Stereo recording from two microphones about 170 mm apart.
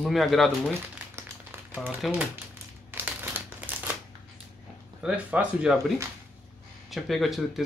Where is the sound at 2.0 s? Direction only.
5° right (ahead or behind).